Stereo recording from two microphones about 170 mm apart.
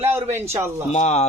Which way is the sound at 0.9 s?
40° left (ahead or behind).